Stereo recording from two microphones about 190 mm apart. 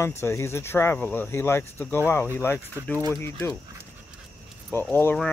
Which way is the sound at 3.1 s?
15° left (ahead or behind).